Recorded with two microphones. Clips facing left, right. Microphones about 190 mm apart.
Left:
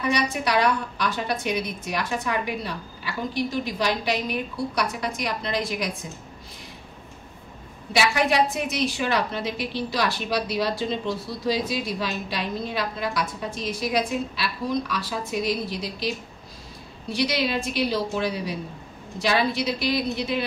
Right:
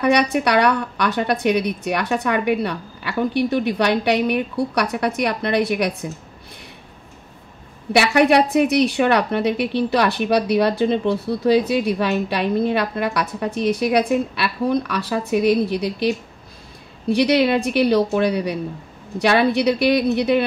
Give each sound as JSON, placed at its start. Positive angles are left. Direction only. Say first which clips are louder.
{"t": 0.0, "sound": "a woman's voice", "louder": "right 7 dB", "side_deg": -65}
{"t": 7.9, "sound": "a woman's voice", "louder": "right 7 dB", "side_deg": -60}